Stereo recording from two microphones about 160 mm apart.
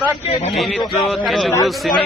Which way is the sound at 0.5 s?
Centre (ahead or behind).